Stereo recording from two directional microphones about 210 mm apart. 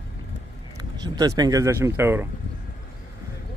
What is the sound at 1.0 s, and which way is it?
Speech, 15° right (ahead or behind).